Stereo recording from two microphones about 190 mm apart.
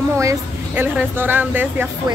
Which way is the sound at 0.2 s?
15° right (ahead or behind).